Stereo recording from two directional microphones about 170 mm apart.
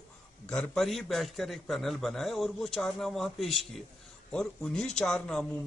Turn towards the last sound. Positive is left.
turn(degrees=5)  # may be behind; listen again after turning